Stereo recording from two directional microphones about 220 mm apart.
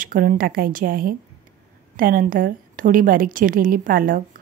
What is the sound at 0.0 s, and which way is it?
A woman's voice, 40° right (ahead or behind).